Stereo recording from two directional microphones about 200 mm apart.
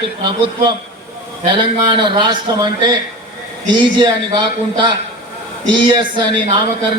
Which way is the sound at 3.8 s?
25° right (ahead or behind).